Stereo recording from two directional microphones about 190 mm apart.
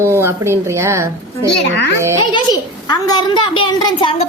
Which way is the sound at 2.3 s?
20° left (ahead or behind).